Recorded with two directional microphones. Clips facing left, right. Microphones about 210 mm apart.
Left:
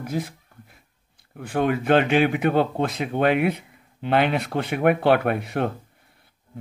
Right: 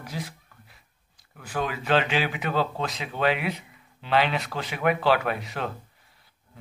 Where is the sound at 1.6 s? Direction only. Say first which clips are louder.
Left 6 dB; 55° left (ahead or behind).